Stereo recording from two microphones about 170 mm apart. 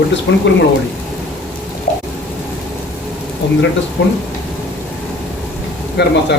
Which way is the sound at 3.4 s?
90° left.